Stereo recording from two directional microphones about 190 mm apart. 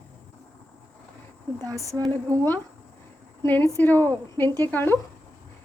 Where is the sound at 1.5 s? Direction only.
20° right (ahead or behind).